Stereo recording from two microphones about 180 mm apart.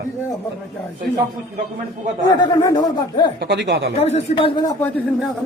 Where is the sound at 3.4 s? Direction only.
70° right (ahead or behind).